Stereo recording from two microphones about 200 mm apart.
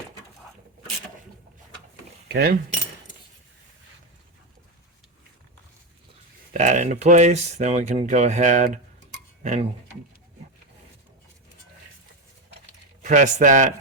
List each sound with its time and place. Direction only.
2.2 s speech: 50° right (ahead or behind)
6.5 s speech: 35° right (ahead or behind)
13.0 s speech: 35° right (ahead or behind)